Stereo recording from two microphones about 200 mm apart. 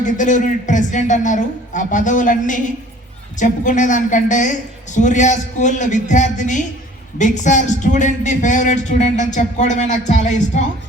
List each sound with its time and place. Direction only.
0.0 s speech: 40° left (ahead or behind)